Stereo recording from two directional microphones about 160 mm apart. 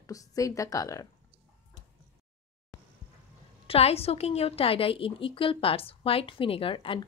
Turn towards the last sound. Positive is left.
turn(degrees=35)  # may be behind; listen again after turning